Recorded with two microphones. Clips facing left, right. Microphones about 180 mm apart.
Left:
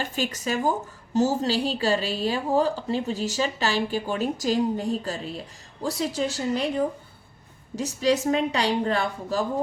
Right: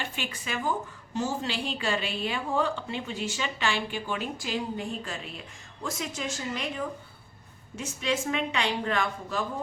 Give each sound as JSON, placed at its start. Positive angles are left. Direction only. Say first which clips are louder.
{"t": 0.0, "sound": "a woman's voice", "louder": "left 8 dB", "side_deg": 40}